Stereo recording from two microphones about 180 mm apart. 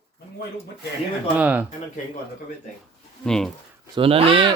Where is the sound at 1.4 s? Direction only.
10° right (ahead or behind).